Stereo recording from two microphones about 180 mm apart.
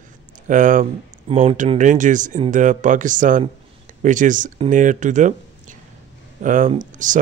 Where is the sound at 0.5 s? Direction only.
45° right (ahead or behind).